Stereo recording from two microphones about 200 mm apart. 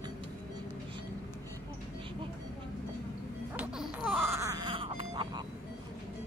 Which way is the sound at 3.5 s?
5° right (ahead or behind).